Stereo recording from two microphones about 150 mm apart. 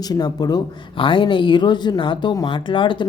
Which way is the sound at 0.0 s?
25° left (ahead or behind).